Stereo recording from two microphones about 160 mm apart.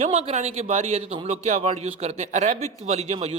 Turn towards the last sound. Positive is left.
turn(degrees=-40)  # may be behind; listen again after turning